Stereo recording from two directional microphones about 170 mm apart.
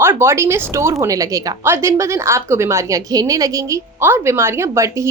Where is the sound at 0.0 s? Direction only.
15° right (ahead or behind).